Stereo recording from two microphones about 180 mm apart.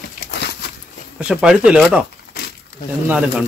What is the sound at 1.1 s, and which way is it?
Speech, 5° right (ahead or behind).